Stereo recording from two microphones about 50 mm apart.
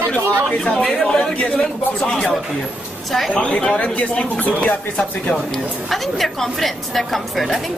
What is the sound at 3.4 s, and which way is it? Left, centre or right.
Speech, centre.